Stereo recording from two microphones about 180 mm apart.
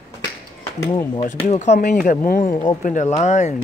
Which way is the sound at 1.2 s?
40° left (ahead or behind).